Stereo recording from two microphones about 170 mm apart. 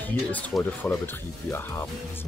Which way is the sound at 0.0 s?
10° left (ahead or behind).